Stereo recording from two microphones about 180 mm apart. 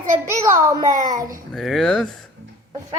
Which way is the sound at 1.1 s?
50° right (ahead or behind).